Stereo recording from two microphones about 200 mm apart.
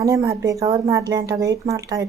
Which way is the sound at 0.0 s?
15° right (ahead or behind).